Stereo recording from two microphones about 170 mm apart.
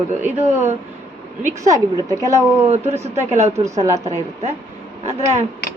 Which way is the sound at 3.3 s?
40° right (ahead or behind).